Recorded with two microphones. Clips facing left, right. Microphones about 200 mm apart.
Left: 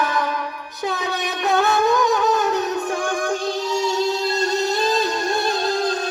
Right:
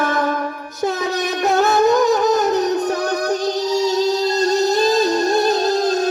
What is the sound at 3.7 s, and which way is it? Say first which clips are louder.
Music: right 4 dB; 40° right (ahead or behind).